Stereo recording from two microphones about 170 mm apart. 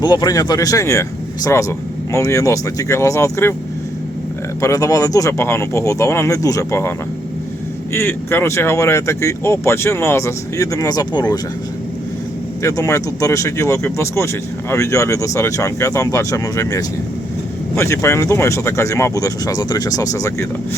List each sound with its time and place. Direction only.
0.0 s speech: 25° left (ahead or behind)
4.6 s speech: 20° left (ahead or behind)
7.9 s speech: 15° left (ahead or behind)
12.6 s speech: 20° left (ahead or behind)